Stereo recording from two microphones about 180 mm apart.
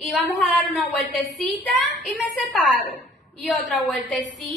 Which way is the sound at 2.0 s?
Centre (ahead or behind).